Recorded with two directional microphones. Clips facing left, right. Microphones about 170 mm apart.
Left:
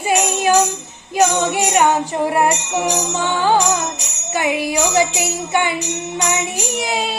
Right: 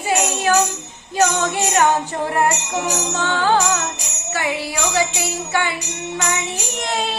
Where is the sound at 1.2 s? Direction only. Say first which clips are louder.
Left 2 dB; 15° left (ahead or behind).